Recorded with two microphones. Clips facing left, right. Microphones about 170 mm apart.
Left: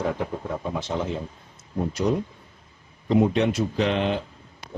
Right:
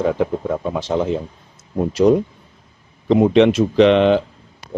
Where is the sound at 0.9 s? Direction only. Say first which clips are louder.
Right 9 dB; 80° right.